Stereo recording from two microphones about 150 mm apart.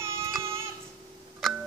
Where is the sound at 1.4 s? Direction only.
Centre (ahead or behind).